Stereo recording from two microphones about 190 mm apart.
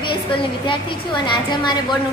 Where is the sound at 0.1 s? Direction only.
25° left (ahead or behind).